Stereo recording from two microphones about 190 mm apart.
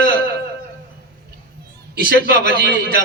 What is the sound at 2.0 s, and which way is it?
Speech, 45° left (ahead or behind).